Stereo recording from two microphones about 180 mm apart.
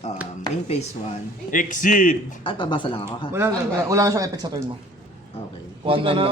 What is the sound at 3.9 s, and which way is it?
Speech, 20° right (ahead or behind).